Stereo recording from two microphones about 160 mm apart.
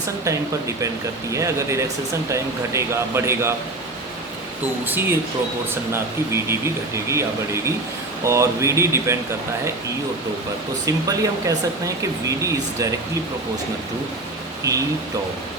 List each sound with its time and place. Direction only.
1.3 s speech: 20° right (ahead or behind)
4.9 s speech: 15° right (ahead or behind)
10.8 s speech: 20° right (ahead or behind)
14.7 s speech: 20° right (ahead or behind)